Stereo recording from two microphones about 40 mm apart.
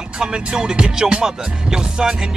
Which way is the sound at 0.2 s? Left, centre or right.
Centre.